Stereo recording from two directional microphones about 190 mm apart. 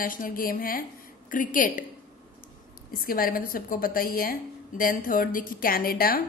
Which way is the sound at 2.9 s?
50° left (ahead or behind).